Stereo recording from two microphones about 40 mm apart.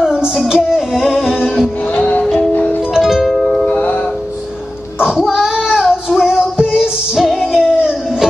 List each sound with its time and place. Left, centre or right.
0.0 s music: centre
2.0 s music: left
2.9 s music: centre
3.2 s music: centre
3.6 s music: left
5.0 s child singing: centre
6.3 s music: right